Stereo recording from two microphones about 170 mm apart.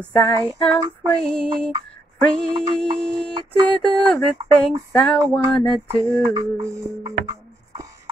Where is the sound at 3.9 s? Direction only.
5° left (ahead or behind).